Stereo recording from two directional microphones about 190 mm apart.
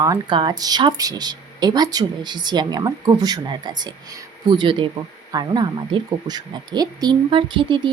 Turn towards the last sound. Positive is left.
turn(degrees=-25)  # may be behind; listen again after turning